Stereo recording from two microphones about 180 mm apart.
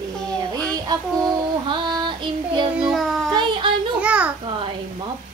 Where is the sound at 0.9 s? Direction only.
20° right (ahead or behind).